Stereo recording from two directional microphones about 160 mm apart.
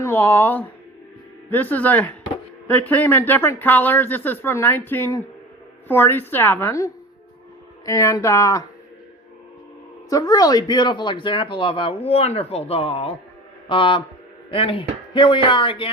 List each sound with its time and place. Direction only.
0.0 s speech: 15° left (ahead or behind)
10.1 s speech: 25° left (ahead or behind)